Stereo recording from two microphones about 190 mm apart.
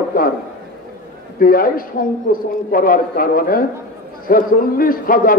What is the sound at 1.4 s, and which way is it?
A man's voice, 50° left (ahead or behind).